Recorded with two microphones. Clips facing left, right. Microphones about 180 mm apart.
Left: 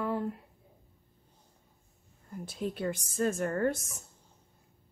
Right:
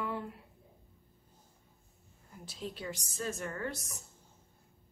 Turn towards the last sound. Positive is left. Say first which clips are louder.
# left 9 dB
turn(degrees=50)  # may be behind; listen again after turning